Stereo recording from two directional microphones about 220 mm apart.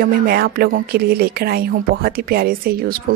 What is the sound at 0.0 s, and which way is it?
Speech, 45° right (ahead or behind).